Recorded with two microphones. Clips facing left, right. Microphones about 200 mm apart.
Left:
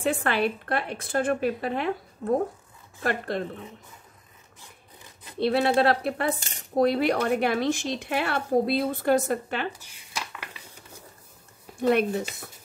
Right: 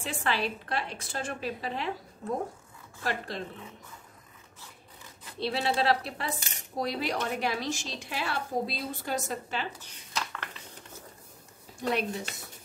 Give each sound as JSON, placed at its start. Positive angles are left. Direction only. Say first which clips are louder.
{"t": 0.0, "sound": "a woman's voice", "louder": "left 7 dB", "side_deg": 55}
{"t": 5.4, "sound": "a woman's voice", "louder": "left 7 dB", "side_deg": 55}
{"t": 9.7, "sound": "dishes", "louder": "left 5 dB", "side_deg": 10}
{"t": 11.9, "sound": "a woman's voice", "louder": "left 7 dB", "side_deg": 55}